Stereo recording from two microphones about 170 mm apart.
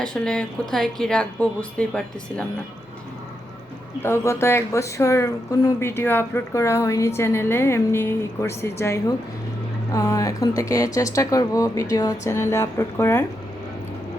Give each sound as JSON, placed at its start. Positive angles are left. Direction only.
{"t": 0.0, "sound": "speech", "side_deg": 5}
{"t": 4.0, "sound": "speech", "side_deg": 15}